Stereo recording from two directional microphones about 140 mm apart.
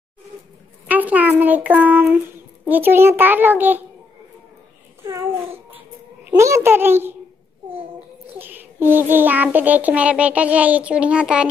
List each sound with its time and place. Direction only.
0.8 s a child's voice: 10° right (ahead or behind)
5.0 s babbling: 15° right (ahead or behind)
6.3 s a child's voice: 20° right (ahead or behind)
8.4 s a child's voice: 15° right (ahead or behind)